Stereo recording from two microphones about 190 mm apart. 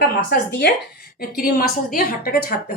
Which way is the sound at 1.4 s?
50° left (ahead or behind).